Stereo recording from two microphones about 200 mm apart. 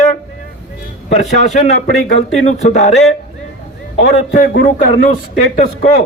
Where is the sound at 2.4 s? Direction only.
35° left (ahead or behind).